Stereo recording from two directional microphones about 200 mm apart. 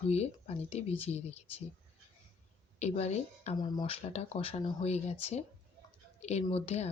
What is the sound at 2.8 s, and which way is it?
Speech, 35° left (ahead or behind).